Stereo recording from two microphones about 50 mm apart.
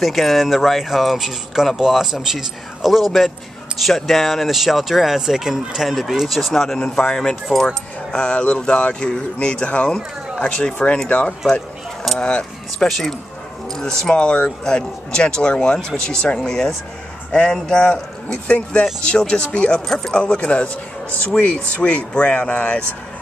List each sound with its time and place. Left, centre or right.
0.0 s a man's voice: centre
8.2 s speech: left
12.7 s a man's voice: centre; by 22.8 s left